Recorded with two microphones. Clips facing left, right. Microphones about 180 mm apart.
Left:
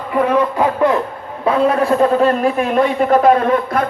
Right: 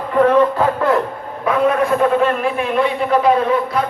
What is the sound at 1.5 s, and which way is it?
A man's voice, 35° left (ahead or behind).